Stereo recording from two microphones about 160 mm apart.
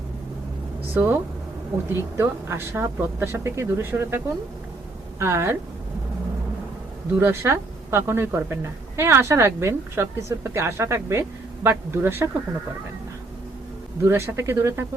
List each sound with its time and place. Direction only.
0.9 s a woman's voice: 15° right (ahead or behind)
5.2 s a woman's voice: 15° right (ahead or behind)
7.2 s a woman's voice: 15° right (ahead or behind)
14.0 s a woman's voice: 15° right (ahead or behind)